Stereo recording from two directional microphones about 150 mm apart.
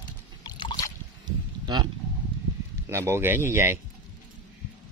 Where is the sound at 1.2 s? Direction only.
30° right (ahead or behind).